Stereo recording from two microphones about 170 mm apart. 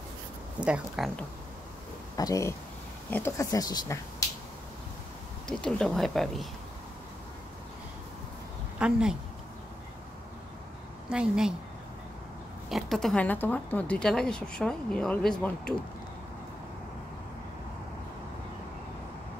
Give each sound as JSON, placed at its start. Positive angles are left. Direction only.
{"t": 0.6, "sound": "speech", "side_deg": -5}
{"t": 2.1, "sound": "speech", "side_deg": 20}
{"t": 5.5, "sound": "speech", "side_deg": 5}
{"t": 8.7, "sound": "speech", "side_deg": -5}
{"t": 11.1, "sound": "speech", "side_deg": -5}
{"t": 12.6, "sound": "speech", "side_deg": 0}